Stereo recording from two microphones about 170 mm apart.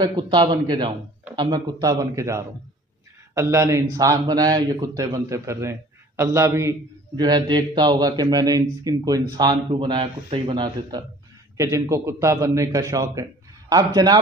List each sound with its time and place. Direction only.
0.0 s a man's voice: 25° right (ahead or behind)